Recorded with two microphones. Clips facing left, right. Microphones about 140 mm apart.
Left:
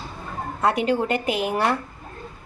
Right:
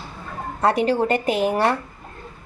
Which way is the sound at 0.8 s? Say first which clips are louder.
Right 2 dB; 35° right (ahead or behind).